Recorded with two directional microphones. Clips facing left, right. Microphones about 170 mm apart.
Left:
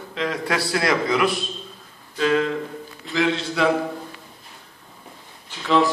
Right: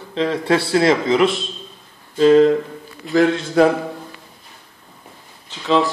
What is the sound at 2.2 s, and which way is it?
A man's voice, 35° right (ahead or behind).